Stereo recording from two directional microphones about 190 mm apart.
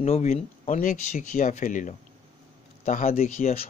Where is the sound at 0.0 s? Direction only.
35° left (ahead or behind).